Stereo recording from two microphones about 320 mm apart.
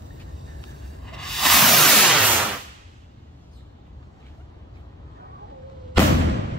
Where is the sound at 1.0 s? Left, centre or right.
Centre.